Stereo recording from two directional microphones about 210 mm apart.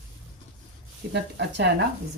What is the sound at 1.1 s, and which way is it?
Speech, 55° right (ahead or behind).